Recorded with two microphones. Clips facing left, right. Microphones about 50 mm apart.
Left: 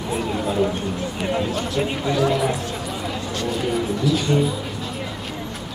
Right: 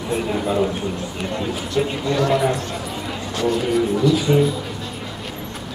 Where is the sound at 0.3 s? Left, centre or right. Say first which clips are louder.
Right 1 dB; centre.